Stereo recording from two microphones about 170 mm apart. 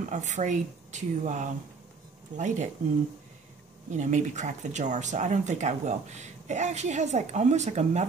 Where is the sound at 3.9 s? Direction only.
45° right (ahead or behind).